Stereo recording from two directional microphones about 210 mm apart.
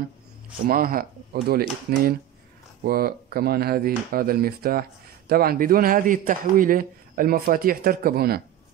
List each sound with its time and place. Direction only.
0.7 s a man's voice: 45° right (ahead or behind)